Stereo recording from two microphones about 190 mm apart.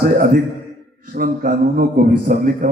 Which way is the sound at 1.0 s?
50° right (ahead or behind).